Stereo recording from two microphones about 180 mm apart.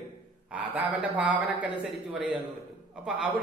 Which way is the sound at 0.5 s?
10° right (ahead or behind).